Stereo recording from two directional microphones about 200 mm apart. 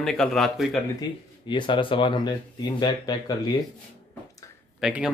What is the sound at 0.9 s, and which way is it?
Speech, 25° left (ahead or behind).